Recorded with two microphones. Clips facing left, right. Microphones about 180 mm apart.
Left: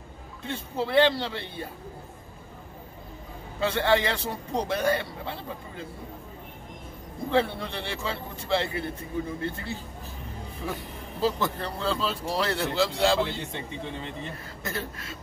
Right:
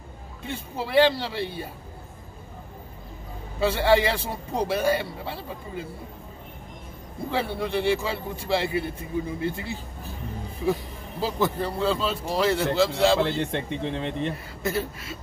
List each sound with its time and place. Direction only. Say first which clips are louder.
0.5 s a man's voice: left 1 dB; 10° right (ahead or behind)
3.6 s a man's voice: right 3 dB; 5° right (ahead or behind)
7.2 s a man's voice: left 2 dB; 5° right (ahead or behind)
11.1 s speech: right 2 dB; 10° right (ahead or behind)
13.5 s speech: right 7 dB; 75° right (ahead or behind)
14.6 s speech: right 7 dB; 5° right (ahead or behind)